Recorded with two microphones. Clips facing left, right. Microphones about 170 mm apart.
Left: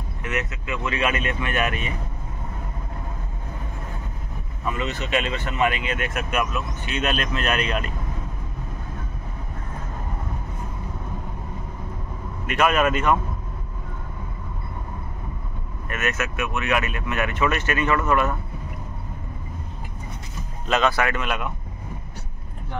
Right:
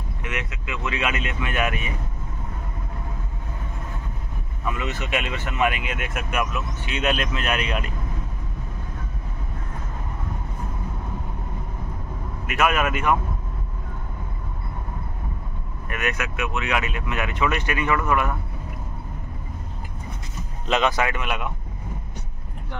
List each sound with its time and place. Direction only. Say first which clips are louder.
0.3 s speech: left 4 dB; 10° right (ahead or behind)
4.6 s speech: left 1 dB; 10° right (ahead or behind)
12.4 s speech: left 2 dB; 10° right (ahead or behind)
15.9 s speech: left 1 dB; 15° right (ahead or behind)
20.6 s speech: even; 15° right (ahead or behind)